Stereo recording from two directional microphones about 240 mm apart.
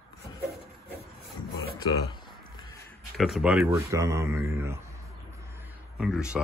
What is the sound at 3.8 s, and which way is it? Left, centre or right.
Speech, centre.